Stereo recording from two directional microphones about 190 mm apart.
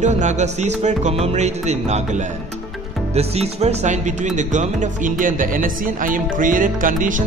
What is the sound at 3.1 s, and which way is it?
Speech, 35° right (ahead or behind).